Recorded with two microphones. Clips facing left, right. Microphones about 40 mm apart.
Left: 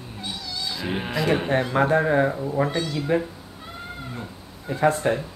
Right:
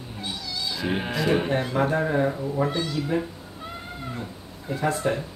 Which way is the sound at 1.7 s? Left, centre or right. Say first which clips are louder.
Left 4 dB; left.